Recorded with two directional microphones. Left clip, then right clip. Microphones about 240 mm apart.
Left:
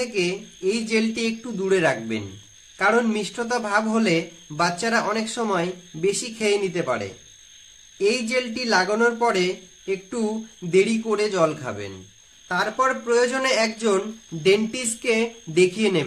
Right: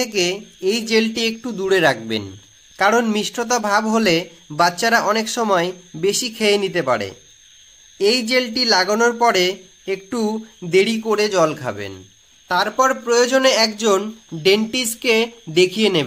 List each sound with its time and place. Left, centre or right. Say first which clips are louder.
0.0 s speech: right 5 dB; right